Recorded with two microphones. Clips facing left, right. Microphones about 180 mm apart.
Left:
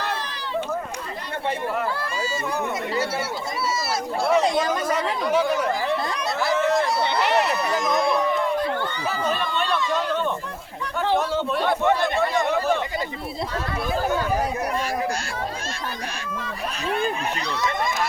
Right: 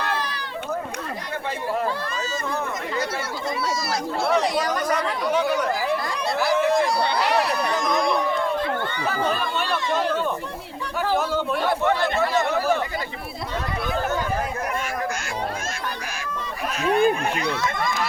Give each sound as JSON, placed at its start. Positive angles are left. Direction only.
{"t": 4.4, "sound": "speech", "side_deg": 25}
{"t": 5.2, "sound": "speech", "side_deg": 0}
{"t": 7.0, "sound": "speech", "side_deg": 20}
{"t": 7.5, "sound": "speech", "side_deg": 0}
{"t": 8.8, "sound": "speech", "side_deg": -55}
{"t": 9.3, "sound": "speech", "side_deg": 0}
{"t": 11.2, "sound": "speech", "side_deg": 0}
{"t": 11.8, "sound": "speech", "side_deg": 20}
{"t": 12.5, "sound": "chatter", "side_deg": -5}
{"t": 16.8, "sound": "speech", "side_deg": -55}